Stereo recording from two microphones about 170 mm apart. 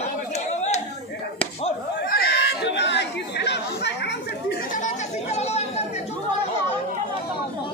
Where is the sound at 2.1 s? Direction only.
75° left (ahead or behind).